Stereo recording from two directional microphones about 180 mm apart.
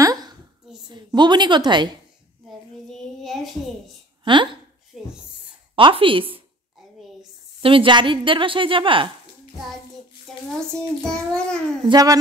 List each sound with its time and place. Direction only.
0.0 s a sound: 20° right (ahead or behind)
0.8 s a woman's voice: 25° right (ahead or behind)
2.9 s a child's voice: centre (ahead or behind)
4.2 s speech: 25° right (ahead or behind)
4.9 s speech: centre (ahead or behind)
5.8 s a woman's voice: 30° right (ahead or behind)
7.6 s a woman's voice: 30° right (ahead or behind)
11.1 s a child's voice: 5° left (ahead or behind)
11.9 s a woman's voice: 20° right (ahead or behind)